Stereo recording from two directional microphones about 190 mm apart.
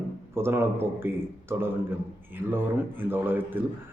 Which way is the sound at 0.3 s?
15° right (ahead or behind).